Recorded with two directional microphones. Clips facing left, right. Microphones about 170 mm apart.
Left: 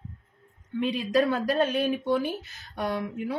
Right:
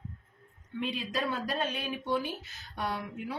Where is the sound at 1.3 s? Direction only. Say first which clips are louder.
Left 8 dB; 50° left (ahead or behind).